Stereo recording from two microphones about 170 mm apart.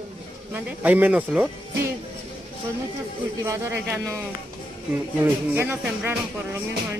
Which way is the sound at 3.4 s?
15° right (ahead or behind).